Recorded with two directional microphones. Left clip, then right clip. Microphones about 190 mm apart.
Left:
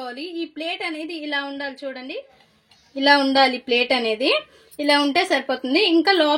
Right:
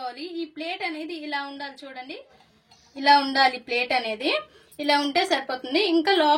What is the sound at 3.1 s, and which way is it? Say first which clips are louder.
A woman's voice: left 2 dB; 40° left (ahead or behind).